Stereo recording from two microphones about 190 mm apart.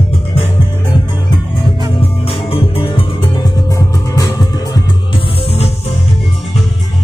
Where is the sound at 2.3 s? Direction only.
30° left (ahead or behind).